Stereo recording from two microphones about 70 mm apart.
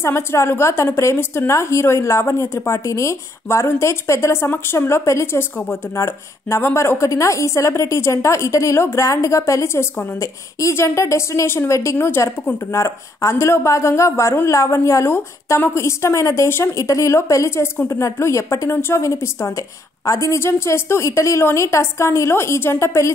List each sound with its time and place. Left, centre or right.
0.0 s a woman's voice: left
16.7 s a woman's voice: left